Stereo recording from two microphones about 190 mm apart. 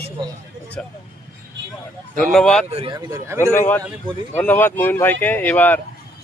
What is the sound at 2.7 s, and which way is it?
Speech, 30° right (ahead or behind).